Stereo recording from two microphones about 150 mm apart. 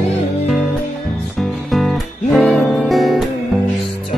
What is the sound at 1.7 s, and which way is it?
Music, centre (ahead or behind).